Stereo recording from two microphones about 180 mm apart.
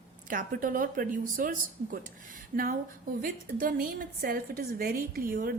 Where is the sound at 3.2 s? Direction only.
50° right (ahead or behind).